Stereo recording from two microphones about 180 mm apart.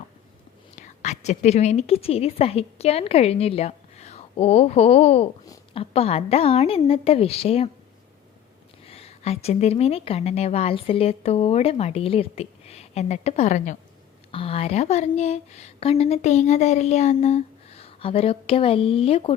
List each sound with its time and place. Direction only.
0.8 s a woman's voice: 40° left (ahead or behind)
8.9 s speech: 35° left (ahead or behind)